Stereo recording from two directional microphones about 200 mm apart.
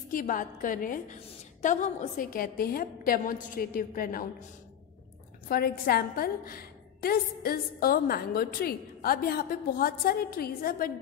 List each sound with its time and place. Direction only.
0.1 s a woman's voice: 40° left (ahead or behind)
5.5 s a woman's voice: 50° left (ahead or behind)